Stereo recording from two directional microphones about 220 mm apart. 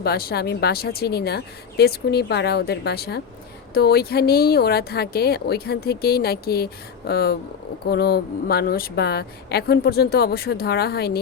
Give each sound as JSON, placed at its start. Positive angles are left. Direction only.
{"t": 0.0, "sound": "a woman's voice", "side_deg": 45}